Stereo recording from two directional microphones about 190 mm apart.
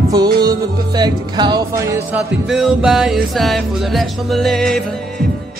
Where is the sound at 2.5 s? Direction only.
5° right (ahead or behind).